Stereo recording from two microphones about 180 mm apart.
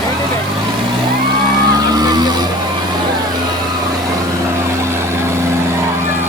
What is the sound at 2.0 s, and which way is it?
Vehicle, 20° right (ahead or behind).